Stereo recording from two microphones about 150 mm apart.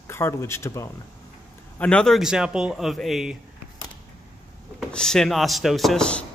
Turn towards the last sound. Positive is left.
turn(degrees=5)  # may be behind; listen again after turning